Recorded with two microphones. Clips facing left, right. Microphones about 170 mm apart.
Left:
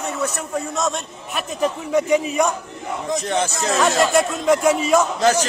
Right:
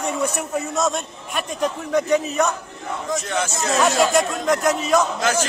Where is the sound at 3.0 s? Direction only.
30° left (ahead or behind).